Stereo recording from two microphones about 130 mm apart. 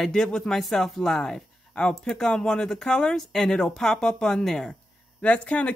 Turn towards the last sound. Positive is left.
turn(degrees=10)  # may be behind; listen again after turning